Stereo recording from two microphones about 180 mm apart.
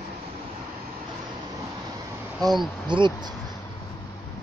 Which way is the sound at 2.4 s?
20° right (ahead or behind).